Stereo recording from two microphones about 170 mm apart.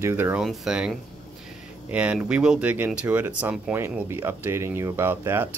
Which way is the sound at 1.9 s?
10° right (ahead or behind).